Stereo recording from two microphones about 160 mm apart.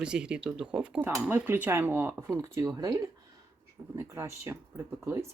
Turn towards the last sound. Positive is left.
turn(degrees=-15)  # may be behind; listen again after turning